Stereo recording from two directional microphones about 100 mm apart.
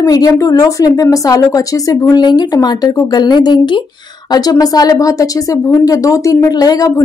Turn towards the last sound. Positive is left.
turn(degrees=35)  # may be behind; listen again after turning